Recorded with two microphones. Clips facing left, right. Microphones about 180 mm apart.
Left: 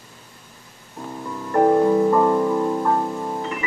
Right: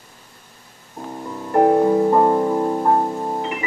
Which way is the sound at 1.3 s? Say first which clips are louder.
Right 1 dB; 25° right (ahead or behind).